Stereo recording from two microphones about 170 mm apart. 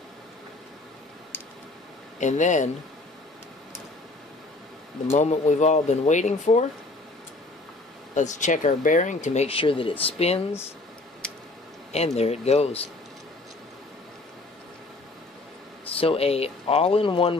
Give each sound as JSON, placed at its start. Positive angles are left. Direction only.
{"t": 2.1, "sound": "speech", "side_deg": 45}
{"t": 5.0, "sound": "speech", "side_deg": 40}
{"t": 8.1, "sound": "speech", "side_deg": 45}
{"t": 12.2, "sound": "speech", "side_deg": 40}
{"t": 15.9, "sound": "speech", "side_deg": 35}